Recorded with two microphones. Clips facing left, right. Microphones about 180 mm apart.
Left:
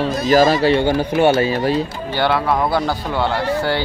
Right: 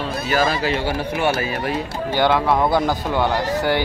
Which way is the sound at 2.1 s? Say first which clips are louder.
Right 1 dB; 15° right (ahead or behind).